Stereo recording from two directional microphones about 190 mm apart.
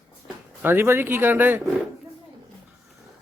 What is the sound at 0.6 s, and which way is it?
Speech, 10° right (ahead or behind).